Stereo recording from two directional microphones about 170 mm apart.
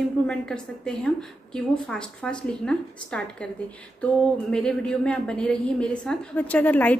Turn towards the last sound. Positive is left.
turn(degrees=10)  # may be behind; listen again after turning